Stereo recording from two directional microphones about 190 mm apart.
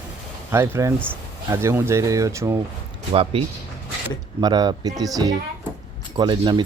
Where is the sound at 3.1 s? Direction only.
30° right (ahead or behind).